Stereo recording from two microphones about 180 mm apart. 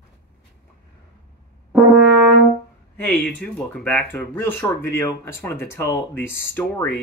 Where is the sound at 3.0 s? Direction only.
5° left (ahead or behind).